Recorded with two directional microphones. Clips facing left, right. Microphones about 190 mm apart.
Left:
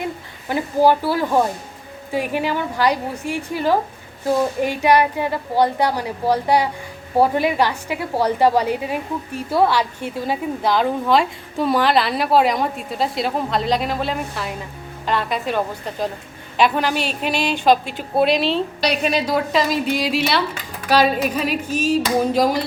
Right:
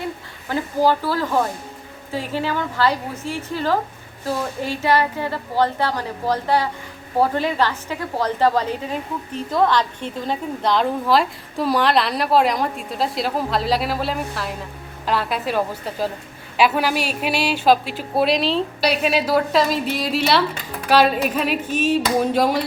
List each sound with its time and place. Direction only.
0.0 s a woman's voice: 15° left (ahead or behind); by 22.5 s centre (ahead or behind)